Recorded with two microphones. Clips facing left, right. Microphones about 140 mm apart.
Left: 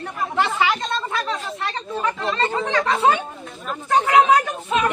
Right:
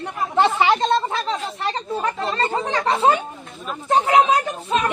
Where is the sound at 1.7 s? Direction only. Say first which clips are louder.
Right 2 dB; 35° right (ahead or behind).